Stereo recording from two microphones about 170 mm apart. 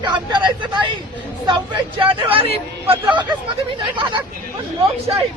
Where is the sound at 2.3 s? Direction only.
35° right (ahead or behind).